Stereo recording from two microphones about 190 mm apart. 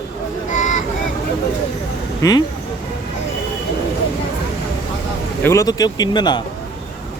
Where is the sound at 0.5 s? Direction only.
40° left (ahead or behind).